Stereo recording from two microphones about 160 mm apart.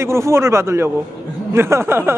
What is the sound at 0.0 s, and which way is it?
A man's voice, 15° right (ahead or behind).